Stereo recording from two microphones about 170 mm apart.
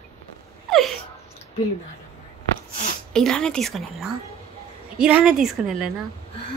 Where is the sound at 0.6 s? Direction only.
Centre (ahead or behind).